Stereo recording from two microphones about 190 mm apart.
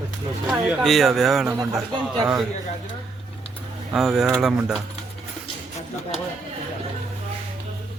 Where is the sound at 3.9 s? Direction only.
Centre (ahead or behind).